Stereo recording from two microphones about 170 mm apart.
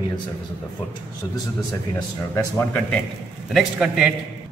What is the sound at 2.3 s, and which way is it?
Speech, 15° left (ahead or behind).